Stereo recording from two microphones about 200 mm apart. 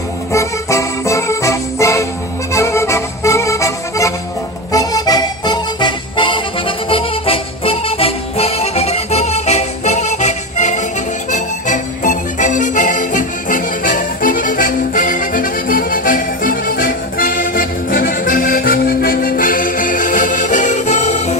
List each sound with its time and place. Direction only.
0.3 s music: 15° left (ahead or behind); by 21.3 s 35° left (ahead or behind)